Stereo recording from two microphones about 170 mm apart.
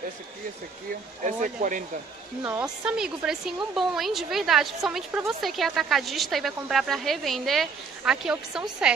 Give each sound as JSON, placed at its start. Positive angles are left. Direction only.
{"t": 1.2, "sound": "speech", "side_deg": -50}
{"t": 2.4, "sound": "speech", "side_deg": -10}